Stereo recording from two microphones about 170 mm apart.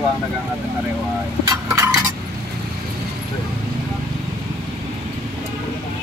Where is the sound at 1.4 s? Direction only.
20° right (ahead or behind).